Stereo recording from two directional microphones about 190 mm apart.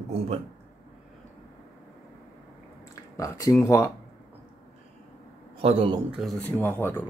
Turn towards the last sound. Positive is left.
turn(degrees=10)  # may be behind; listen again after turning